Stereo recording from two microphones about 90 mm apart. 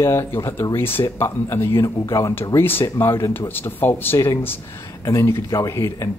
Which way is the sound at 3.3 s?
25° left (ahead or behind).